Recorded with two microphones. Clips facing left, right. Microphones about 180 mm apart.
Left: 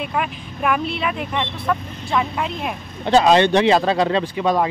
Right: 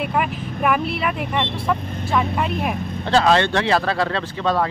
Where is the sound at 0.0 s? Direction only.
5° right (ahead or behind).